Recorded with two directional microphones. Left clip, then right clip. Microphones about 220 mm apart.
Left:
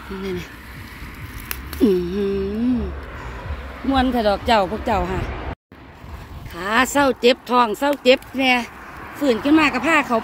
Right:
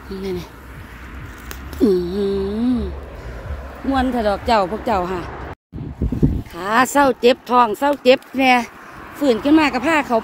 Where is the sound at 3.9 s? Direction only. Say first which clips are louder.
Even; centre (ahead or behind).